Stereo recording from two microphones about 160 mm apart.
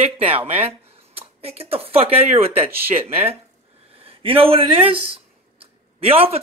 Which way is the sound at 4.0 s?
35° right (ahead or behind).